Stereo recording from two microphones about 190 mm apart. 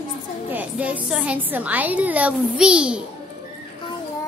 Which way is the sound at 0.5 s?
5° right (ahead or behind).